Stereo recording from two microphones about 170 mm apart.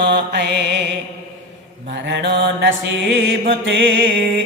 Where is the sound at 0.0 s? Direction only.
80° right.